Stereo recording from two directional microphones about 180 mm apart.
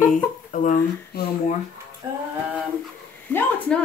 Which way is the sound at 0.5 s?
45° left (ahead or behind).